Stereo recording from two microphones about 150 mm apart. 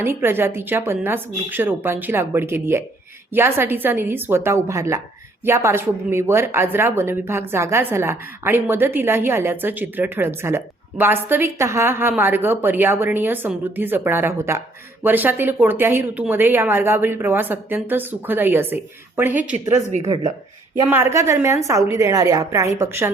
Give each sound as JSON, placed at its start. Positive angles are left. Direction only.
{"t": 0.0, "sound": "speech", "side_deg": -15}
{"t": 20.9, "sound": "a woman's voice", "side_deg": -15}